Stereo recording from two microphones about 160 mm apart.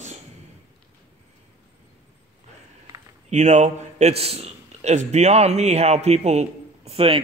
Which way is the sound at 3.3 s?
45° right (ahead or behind).